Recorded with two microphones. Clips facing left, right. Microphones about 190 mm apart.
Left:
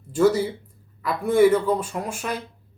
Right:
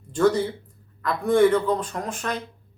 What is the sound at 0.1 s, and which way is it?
Speech, 5° left (ahead or behind).